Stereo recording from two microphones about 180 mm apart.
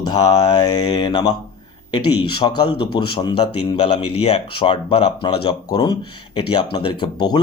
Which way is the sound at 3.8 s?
35° left (ahead or behind).